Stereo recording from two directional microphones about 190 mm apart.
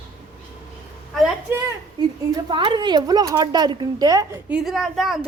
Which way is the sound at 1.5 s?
15° right (ahead or behind).